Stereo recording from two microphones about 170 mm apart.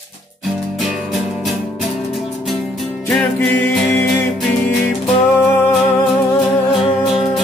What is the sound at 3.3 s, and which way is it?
Music, 15° left (ahead or behind).